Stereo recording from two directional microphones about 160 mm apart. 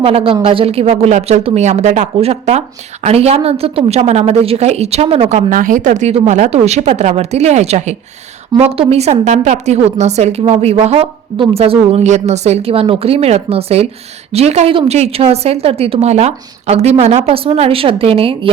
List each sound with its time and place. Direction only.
0.0 s a woman's voice: 35° right (ahead or behind)
5.5 s a woman's voice: 55° right (ahead or behind); by 18.5 s 35° right (ahead or behind)